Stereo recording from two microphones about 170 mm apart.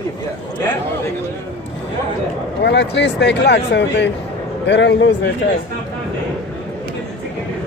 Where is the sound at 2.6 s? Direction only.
90° left.